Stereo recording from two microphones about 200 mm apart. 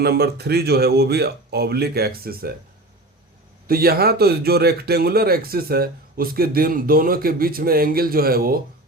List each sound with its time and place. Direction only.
0.0 s speech: 50° right (ahead or behind)
3.7 s speech: 50° right (ahead or behind)